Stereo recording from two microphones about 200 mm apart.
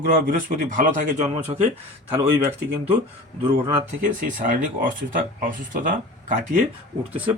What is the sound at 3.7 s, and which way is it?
Speech, 40° right (ahead or behind).